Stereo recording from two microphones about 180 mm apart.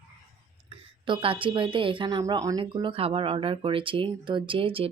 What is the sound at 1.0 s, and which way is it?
Speech, 30° right (ahead or behind).